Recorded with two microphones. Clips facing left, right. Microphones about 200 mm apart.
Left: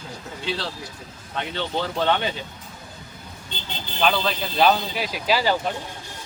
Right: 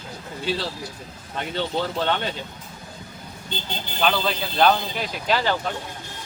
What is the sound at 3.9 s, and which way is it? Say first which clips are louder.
Speech: left 1 dB; centre (ahead or behind).